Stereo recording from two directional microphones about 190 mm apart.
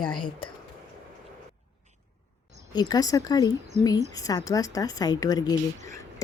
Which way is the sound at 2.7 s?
20° left (ahead or behind).